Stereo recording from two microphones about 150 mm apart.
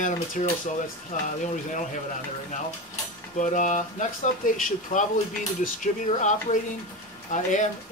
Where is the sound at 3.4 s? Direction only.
55° left (ahead or behind).